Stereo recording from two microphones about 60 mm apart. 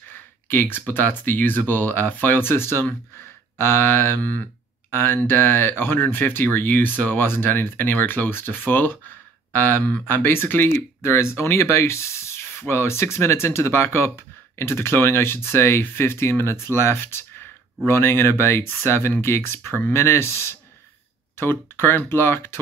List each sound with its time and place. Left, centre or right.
0.1 s speech: left